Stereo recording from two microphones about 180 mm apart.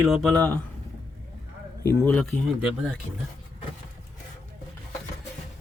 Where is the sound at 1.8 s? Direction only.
10° left (ahead or behind).